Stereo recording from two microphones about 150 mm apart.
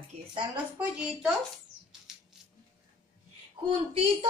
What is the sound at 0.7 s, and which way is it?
Speech, 5° right (ahead or behind).